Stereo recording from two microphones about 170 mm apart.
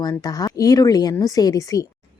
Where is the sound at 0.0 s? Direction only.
25° left (ahead or behind).